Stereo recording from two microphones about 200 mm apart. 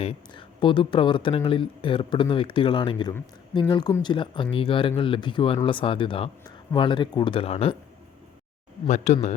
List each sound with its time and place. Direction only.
0.0 s speech: 30° left (ahead or behind)
9.1 s a man's voice: 35° left (ahead or behind)